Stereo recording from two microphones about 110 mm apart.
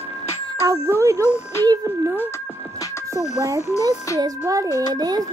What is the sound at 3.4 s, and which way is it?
Speech, 20° right (ahead or behind).